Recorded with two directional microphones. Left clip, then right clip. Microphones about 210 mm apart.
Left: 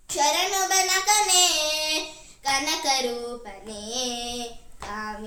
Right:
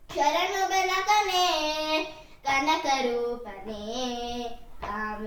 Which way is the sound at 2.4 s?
20° left (ahead or behind).